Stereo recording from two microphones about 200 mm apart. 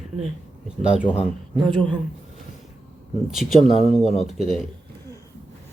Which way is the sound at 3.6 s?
35° left (ahead or behind).